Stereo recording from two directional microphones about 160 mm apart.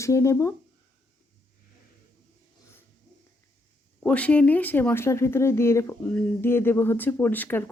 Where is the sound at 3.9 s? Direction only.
10° left (ahead or behind).